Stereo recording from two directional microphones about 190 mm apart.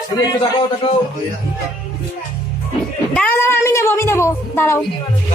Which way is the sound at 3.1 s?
10° left (ahead or behind).